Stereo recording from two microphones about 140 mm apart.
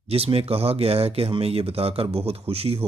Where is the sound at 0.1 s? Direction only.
45° right (ahead or behind).